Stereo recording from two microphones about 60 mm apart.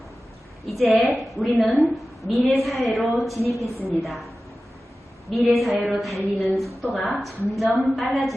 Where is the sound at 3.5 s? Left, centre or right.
Right.